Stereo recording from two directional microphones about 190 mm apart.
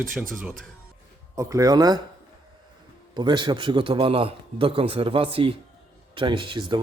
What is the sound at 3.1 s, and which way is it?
A man's voice, 25° right (ahead or behind).